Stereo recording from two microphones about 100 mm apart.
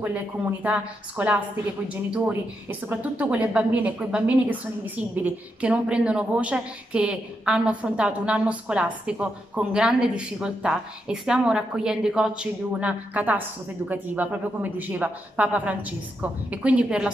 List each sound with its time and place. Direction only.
0.0 s a woman's voice: 15° right (ahead or behind)